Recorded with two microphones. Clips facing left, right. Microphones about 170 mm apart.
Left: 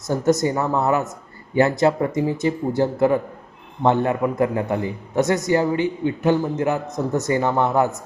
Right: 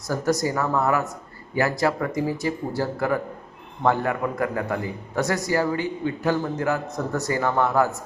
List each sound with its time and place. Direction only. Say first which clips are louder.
0.1 s a man's voice: left 4 dB; 25° left (ahead or behind)